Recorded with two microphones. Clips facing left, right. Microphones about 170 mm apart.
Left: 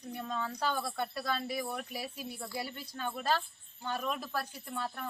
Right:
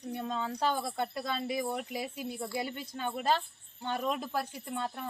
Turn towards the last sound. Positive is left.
turn(degrees=-20)  # may be behind; listen again after turning